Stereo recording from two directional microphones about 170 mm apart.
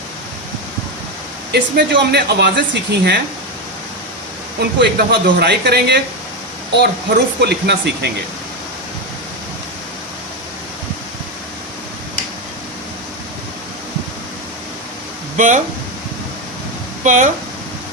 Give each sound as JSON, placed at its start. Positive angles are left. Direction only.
{"t": 1.5, "sound": "speech", "side_deg": -85}
{"t": 4.8, "sound": "speech", "side_deg": -85}
{"t": 15.4, "sound": "speech", "side_deg": -45}
{"t": 17.0, "sound": "speech", "side_deg": -45}